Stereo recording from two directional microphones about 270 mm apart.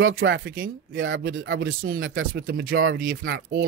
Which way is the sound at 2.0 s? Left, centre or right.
Right.